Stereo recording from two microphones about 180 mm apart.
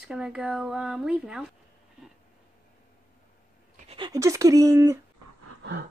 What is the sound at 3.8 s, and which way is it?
Speech, 25° right (ahead or behind).